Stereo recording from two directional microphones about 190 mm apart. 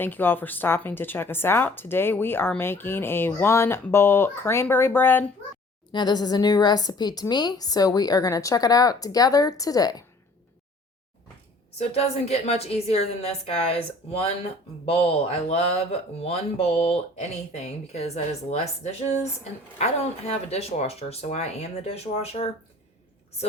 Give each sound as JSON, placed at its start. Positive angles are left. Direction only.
{"t": 0.0, "sound": "a woman's voice", "side_deg": 10}
{"t": 5.9, "sound": "a woman's voice", "side_deg": 20}
{"t": 11.8, "sound": "speech", "side_deg": 35}